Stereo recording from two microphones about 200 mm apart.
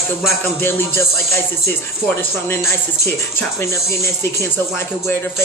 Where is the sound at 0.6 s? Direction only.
10° left (ahead or behind).